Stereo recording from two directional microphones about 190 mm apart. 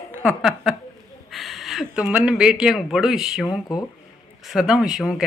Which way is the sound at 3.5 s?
20° left (ahead or behind).